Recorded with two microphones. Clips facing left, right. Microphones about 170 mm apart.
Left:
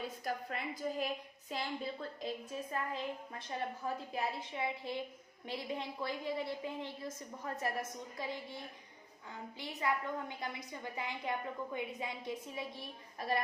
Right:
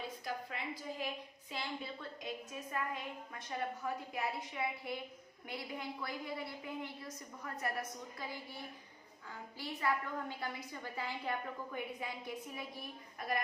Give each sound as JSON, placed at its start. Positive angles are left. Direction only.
{"t": 0.3, "sound": "a woman's voice", "side_deg": 45}